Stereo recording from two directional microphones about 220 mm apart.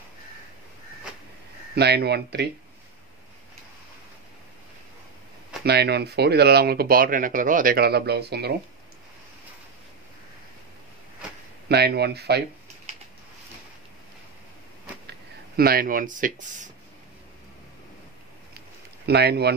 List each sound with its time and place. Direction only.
1.8 s speech: 50° right (ahead or behind)
5.7 s speech: 50° right (ahead or behind)
11.7 s speech: 50° right (ahead or behind)
15.0 s speech: 45° right (ahead or behind)
19.0 s speech: 50° right (ahead or behind)